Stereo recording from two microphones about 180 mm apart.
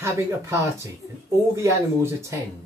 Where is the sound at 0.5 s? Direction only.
15° right (ahead or behind).